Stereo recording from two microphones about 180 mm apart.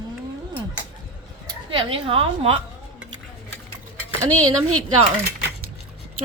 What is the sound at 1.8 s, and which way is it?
Speech, 30° right (ahead or behind).